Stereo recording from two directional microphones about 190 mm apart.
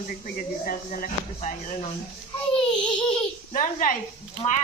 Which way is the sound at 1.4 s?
35° left (ahead or behind).